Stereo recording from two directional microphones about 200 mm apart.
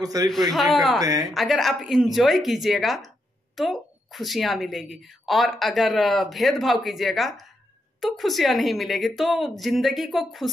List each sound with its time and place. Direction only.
0.0 s a man's voice: 20° right (ahead or behind)
0.3 s speech: centre (ahead or behind)